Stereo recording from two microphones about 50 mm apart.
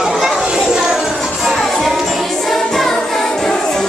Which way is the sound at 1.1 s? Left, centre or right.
Centre.